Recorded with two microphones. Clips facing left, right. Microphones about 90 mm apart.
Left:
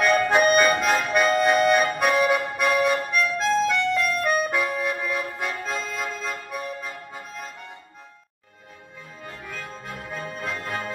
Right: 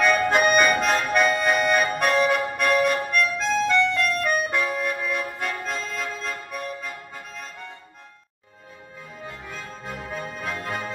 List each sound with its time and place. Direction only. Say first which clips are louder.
0.6 s music: even; centre (ahead or behind)
9.2 s music: left 1 dB; 15° right (ahead or behind)
10.4 s organ: even; 10° right (ahead or behind)